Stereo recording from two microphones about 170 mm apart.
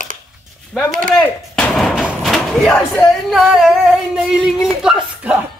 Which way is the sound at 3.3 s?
Centre (ahead or behind).